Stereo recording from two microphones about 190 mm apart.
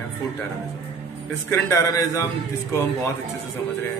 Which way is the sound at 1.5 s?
15° left (ahead or behind).